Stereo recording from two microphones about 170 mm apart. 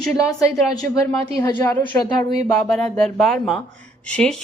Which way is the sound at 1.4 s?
20° left (ahead or behind).